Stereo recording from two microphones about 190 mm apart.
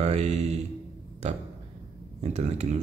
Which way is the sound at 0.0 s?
35° right (ahead or behind).